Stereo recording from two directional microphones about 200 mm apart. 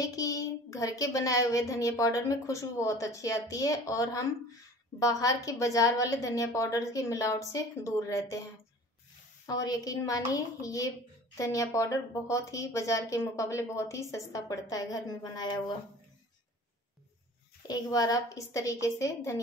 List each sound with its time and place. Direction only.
0.0 s a child's voice: 15° left (ahead or behind)
9.5 s a child's voice: 20° left (ahead or behind)
17.6 s a child's voice: 15° left (ahead or behind)